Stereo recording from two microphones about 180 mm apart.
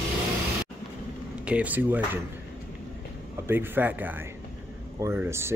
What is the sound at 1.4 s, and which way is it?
Speech, 10° right (ahead or behind).